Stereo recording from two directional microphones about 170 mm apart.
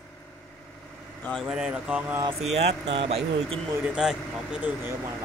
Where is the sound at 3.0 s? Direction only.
35° right (ahead or behind).